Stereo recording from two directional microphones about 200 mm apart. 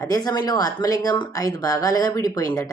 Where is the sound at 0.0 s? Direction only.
20° left (ahead or behind).